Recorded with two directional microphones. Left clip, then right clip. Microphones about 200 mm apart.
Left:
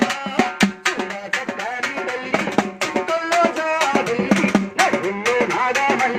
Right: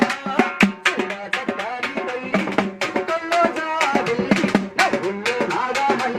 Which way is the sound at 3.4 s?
15° right (ahead or behind).